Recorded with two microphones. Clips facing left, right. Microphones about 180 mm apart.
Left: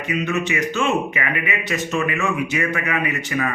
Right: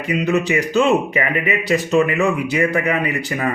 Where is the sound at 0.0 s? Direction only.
35° right (ahead or behind).